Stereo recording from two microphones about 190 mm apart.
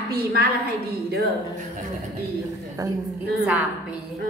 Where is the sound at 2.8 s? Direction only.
20° right (ahead or behind).